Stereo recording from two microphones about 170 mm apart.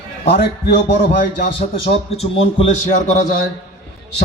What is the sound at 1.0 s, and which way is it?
Speech, 55° left (ahead or behind).